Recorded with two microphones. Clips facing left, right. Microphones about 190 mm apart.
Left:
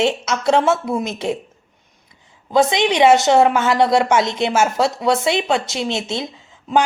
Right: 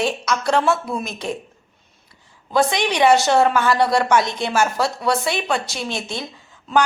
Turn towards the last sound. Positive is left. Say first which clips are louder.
# left 2 dB
turn(degrees=20)  # may be behind; listen again after turning